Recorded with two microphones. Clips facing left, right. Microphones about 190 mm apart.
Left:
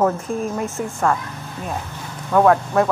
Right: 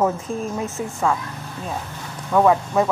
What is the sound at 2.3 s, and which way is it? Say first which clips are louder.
Speech: left 2 dB; 5° right (ahead or behind).